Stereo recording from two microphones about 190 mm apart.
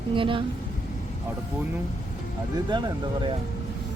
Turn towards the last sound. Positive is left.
turn(degrees=-25)  # may be behind; listen again after turning